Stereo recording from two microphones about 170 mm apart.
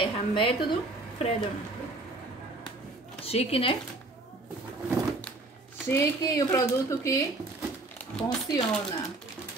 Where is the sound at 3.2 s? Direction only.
35° left (ahead or behind).